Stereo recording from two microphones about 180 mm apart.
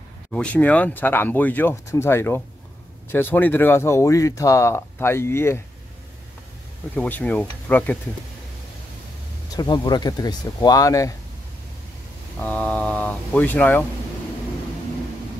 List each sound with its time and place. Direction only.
0.3 s speech: 5° left (ahead or behind)
7.0 s speech: 10° left (ahead or behind)
9.6 s speech: 25° left (ahead or behind)
12.4 s speech: 10° left (ahead or behind)